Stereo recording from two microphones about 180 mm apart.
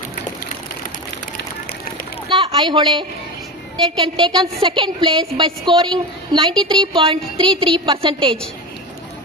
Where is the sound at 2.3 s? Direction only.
25° right (ahead or behind).